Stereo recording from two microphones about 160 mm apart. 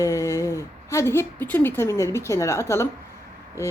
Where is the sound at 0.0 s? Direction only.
20° left (ahead or behind).